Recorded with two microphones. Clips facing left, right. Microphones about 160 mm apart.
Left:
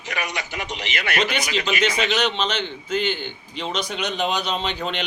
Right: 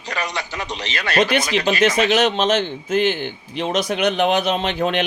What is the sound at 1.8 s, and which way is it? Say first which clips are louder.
A man's voice: right 6 dB; 45° right (ahead or behind).